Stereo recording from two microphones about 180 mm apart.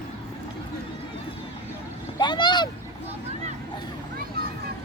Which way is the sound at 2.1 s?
25° left (ahead or behind).